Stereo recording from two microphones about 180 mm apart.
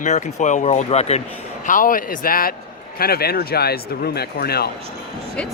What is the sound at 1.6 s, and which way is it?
Speech, 50° left (ahead or behind).